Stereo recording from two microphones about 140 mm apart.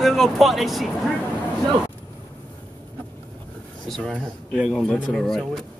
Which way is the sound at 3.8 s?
5° left (ahead or behind).